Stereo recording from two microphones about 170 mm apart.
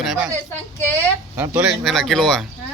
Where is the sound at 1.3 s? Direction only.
10° right (ahead or behind).